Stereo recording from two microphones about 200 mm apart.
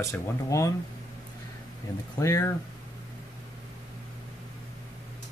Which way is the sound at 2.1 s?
15° left (ahead or behind).